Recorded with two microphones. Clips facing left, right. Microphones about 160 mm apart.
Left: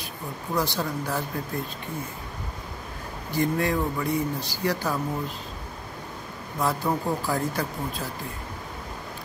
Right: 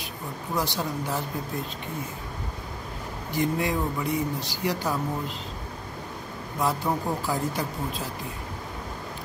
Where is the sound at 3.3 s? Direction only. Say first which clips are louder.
Left 1 dB; 15° right (ahead or behind).